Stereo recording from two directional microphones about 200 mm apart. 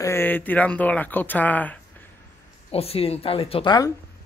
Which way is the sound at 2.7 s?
30° left (ahead or behind).